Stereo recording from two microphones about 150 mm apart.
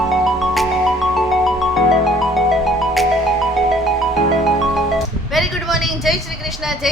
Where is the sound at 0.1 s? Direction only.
Centre (ahead or behind).